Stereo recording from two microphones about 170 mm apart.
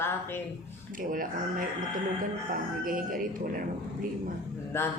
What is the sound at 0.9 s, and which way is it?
Speech, 55° right (ahead or behind).